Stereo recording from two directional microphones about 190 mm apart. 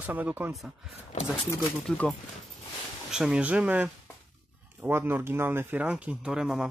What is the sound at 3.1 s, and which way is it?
Speech, 5° right (ahead or behind).